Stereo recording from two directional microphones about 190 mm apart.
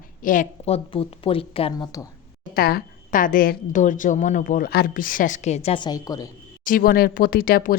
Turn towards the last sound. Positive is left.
turn(degrees=50)  # may be behind; listen again after turning